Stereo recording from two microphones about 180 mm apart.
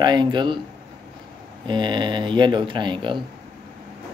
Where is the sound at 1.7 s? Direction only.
25° right (ahead or behind).